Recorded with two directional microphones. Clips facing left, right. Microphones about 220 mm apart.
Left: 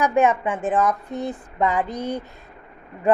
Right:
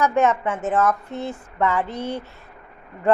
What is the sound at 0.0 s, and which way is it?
A woman's voice, 15° left (ahead or behind).